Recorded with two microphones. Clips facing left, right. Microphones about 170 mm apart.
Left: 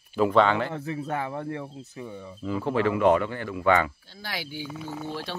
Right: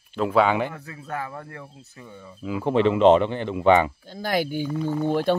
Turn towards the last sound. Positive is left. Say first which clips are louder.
# right 12 dB
turn(degrees=-55)  # may be behind; listen again after turning